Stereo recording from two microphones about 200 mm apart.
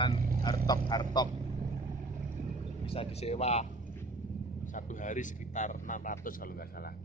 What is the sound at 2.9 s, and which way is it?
Speech, 30° left (ahead or behind).